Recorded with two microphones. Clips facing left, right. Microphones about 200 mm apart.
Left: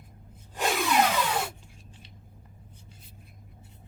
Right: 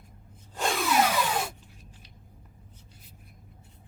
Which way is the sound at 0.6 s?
Centre (ahead or behind).